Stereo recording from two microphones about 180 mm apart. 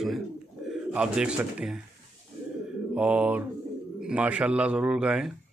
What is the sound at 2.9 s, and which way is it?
Mantra, 5° right (ahead or behind).